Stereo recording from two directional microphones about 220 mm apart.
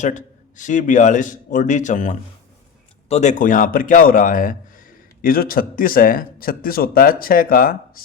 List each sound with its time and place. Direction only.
0.0 s a man's voice: 35° left (ahead or behind)